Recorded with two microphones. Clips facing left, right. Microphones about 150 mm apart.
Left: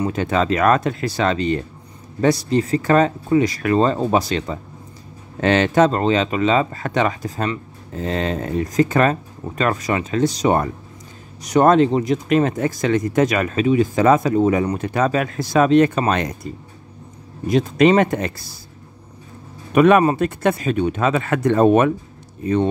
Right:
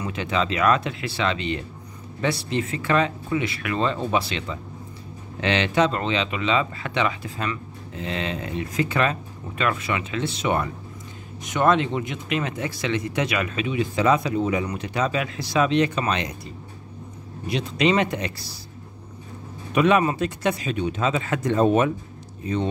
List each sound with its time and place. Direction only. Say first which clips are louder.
0.0 s speech: left 6 dB; 45° left (ahead or behind)
17.5 s speech: left 7 dB; 45° left (ahead or behind)
19.7 s speech: left 6 dB; 50° left (ahead or behind)